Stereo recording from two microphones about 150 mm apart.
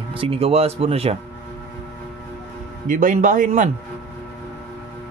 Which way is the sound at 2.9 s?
60° right (ahead or behind).